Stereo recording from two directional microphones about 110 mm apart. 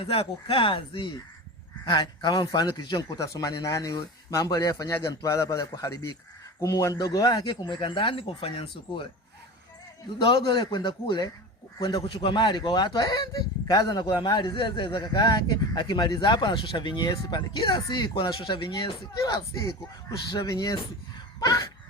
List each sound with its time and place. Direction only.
0.0 s speech: 60° left (ahead or behind); by 3.1 s 40° left (ahead or behind)
3.2 s speech: 30° left (ahead or behind); by 9.0 s 55° left (ahead or behind)
10.2 s speech: 50° left (ahead or behind)
19.3 s speech: 35° left (ahead or behind)